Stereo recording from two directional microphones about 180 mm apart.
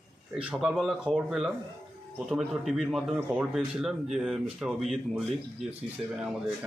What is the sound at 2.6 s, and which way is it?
A man's voice, centre (ahead or behind).